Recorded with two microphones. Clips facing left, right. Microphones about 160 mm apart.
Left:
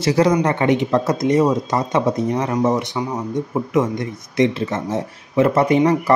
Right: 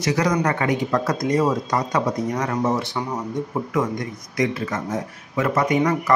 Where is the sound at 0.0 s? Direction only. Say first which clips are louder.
Left 5 dB; 30° left (ahead or behind).